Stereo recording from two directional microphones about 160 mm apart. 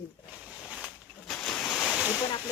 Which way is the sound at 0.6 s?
5° right (ahead or behind).